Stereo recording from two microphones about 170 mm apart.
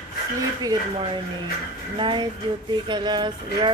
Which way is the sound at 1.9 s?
30° right (ahead or behind).